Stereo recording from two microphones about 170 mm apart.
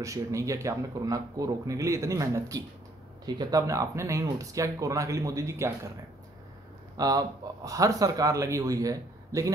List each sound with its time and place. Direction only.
0.0 s speech: 20° right (ahead or behind)
7.0 s speech: 20° right (ahead or behind)